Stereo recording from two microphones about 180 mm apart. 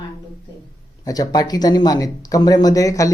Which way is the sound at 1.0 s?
20° left (ahead or behind).